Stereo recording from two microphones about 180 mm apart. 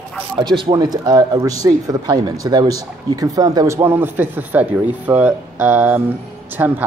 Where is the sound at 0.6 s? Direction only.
25° right (ahead or behind).